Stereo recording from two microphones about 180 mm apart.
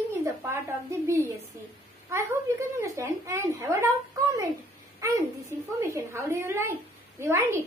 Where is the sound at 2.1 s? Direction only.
15° right (ahead or behind).